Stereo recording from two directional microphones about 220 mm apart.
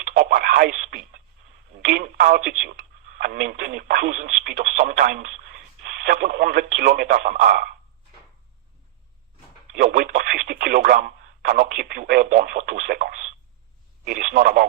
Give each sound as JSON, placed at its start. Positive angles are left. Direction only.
{"t": 0.1, "sound": "radio", "side_deg": -45}
{"t": 1.7, "sound": "speech", "side_deg": -40}
{"t": 9.7, "sound": "speech", "side_deg": -45}